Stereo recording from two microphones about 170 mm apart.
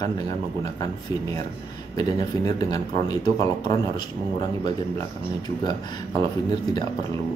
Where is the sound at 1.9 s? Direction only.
20° left (ahead or behind).